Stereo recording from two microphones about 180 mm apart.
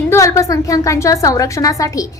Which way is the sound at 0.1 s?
15° left (ahead or behind).